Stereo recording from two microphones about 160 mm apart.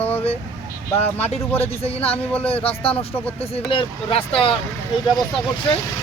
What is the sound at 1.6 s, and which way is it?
Speech, 40° left (ahead or behind).